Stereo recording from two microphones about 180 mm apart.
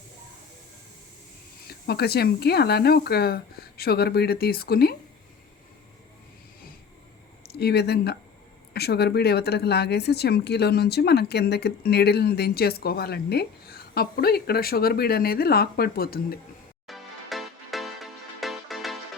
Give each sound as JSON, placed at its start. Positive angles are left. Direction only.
{"t": 1.6, "sound": "speech", "side_deg": 60}
{"t": 7.4, "sound": "speech", "side_deg": 65}
{"t": 16.8, "sound": "music", "side_deg": 0}